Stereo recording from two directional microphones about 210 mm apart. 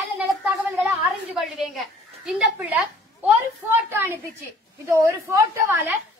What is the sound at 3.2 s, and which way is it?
A woman's voice, 10° right (ahead or behind).